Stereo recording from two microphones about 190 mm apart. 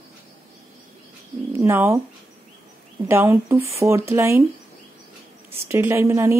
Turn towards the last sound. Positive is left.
turn(degrees=-10)  # may be behind; listen again after turning